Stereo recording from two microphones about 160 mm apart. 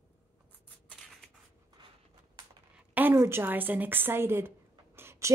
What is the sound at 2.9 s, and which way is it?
A woman's voice, 15° right (ahead or behind).